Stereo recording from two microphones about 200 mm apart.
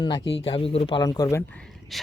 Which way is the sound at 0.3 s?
25° left (ahead or behind).